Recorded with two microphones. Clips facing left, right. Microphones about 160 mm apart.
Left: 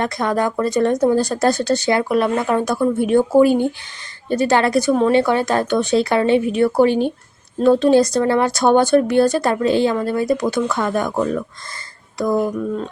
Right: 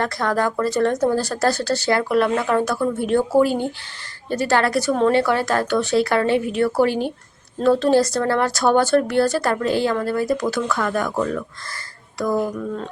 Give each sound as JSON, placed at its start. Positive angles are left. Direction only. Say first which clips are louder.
{"t": 0.0, "sound": "speech", "louder": "left 2 dB", "side_deg": 20}